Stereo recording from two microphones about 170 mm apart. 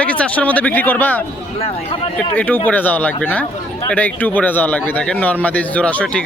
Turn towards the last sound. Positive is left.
turn(degrees=5)  # may be behind; listen again after turning